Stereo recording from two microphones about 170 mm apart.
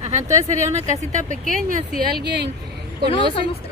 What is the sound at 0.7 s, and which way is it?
Speech, 45° right (ahead or behind).